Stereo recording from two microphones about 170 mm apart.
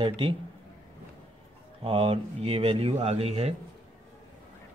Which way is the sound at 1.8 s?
35° right (ahead or behind).